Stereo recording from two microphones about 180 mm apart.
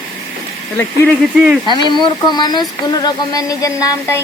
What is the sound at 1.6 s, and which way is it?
Speech, 25° left (ahead or behind).